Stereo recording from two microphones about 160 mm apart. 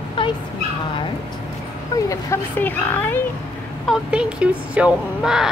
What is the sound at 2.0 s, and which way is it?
Speech, 20° left (ahead or behind).